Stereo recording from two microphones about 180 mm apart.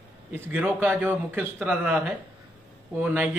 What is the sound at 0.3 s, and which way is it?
A man's voice, 10° right (ahead or behind).